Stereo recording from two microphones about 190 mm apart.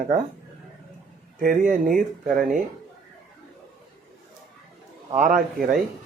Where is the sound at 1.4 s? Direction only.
45° right (ahead or behind).